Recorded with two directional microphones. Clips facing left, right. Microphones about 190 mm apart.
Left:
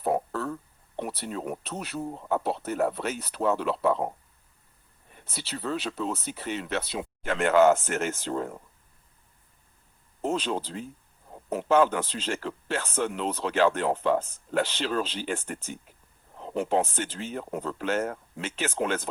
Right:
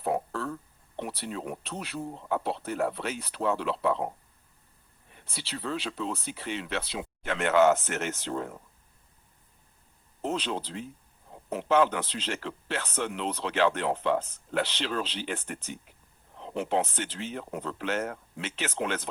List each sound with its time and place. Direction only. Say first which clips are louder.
0.0 s a sound: left 2 dB; 40° left (ahead or behind)
0.9 s speech: left 2 dB; 45° left (ahead or behind)
5.1 s speech: left 2 dB; 45° left (ahead or behind)
10.2 s speech: left 3 dB; 45° left (ahead or behind)